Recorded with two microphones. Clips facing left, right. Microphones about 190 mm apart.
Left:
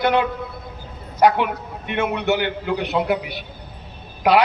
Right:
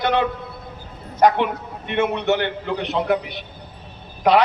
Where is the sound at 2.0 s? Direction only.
Centre (ahead or behind).